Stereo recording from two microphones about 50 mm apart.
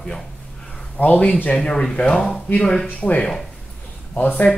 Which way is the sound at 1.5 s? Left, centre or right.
Centre.